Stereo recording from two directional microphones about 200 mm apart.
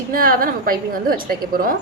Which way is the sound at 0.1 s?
45° right (ahead or behind).